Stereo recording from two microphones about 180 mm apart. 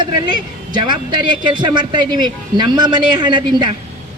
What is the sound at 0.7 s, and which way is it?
A man's voice, 25° right (ahead or behind).